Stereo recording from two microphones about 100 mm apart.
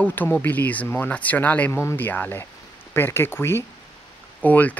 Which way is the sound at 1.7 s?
25° left (ahead or behind).